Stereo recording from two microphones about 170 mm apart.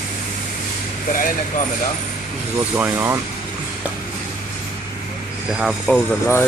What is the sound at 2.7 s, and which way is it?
Speech, 15° right (ahead or behind).